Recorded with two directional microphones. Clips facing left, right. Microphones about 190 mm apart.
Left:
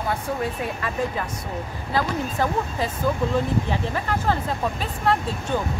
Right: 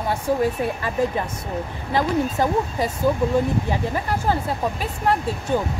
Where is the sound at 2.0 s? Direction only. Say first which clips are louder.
Right 4 dB; 15° right (ahead or behind).